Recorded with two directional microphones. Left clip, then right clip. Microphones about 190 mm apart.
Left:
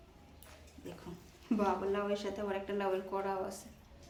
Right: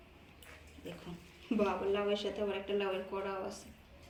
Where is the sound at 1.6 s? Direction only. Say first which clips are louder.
Right 1 dB; 45° left (ahead or behind).